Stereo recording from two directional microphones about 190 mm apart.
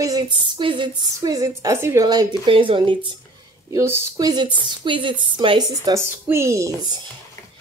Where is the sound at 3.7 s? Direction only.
15° right (ahead or behind).